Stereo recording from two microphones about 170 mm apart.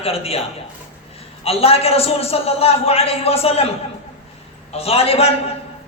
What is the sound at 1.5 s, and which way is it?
A man's voice, 35° left (ahead or behind).